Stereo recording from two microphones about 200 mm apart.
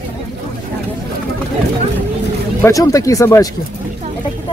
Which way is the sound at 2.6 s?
15° left (ahead or behind).